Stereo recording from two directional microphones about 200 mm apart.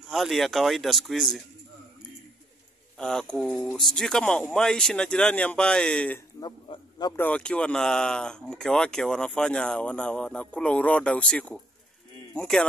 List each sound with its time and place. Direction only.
0.1 s speech: centre (ahead or behind)
3.0 s speech: 5° left (ahead or behind)
6.4 s a man's voice: 20° left (ahead or behind)
7.2 s speech: 5° left (ahead or behind)